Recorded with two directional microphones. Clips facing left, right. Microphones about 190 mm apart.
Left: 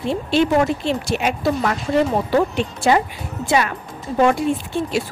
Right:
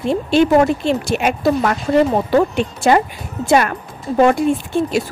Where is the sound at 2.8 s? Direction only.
50° right (ahead or behind).